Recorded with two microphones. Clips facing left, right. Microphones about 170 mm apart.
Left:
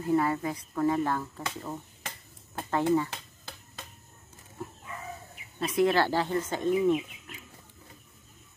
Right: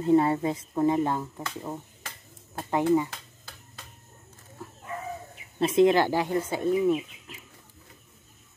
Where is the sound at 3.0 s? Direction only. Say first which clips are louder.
Left 2 dB; 20° left (ahead or behind).